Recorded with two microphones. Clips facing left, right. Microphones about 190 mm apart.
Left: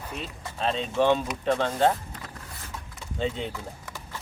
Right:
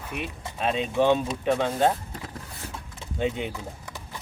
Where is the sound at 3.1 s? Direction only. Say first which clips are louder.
Right 2 dB; 15° right (ahead or behind).